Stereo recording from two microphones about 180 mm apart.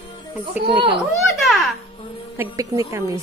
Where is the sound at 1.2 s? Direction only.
Centre (ahead or behind).